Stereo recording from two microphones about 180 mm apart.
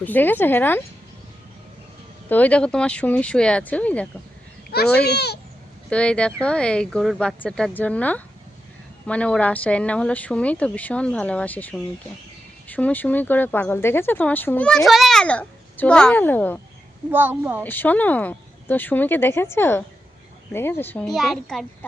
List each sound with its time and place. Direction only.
0.0 s speech: 10° left (ahead or behind)
2.3 s speech: 5° left (ahead or behind)
4.7 s a child's voice: 60° left (ahead or behind)
5.9 s speech: 5° left (ahead or behind)
17.1 s a woman's voice: 10° right (ahead or behind)
17.6 s speech: 10° left (ahead or behind)